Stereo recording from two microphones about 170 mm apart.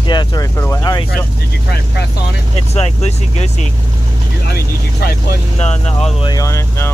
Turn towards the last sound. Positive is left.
turn(degrees=20)  # may be behind; listen again after turning